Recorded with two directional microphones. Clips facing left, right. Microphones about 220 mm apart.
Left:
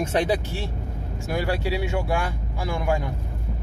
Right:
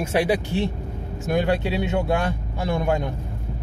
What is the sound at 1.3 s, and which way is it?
Speech, 20° right (ahead or behind).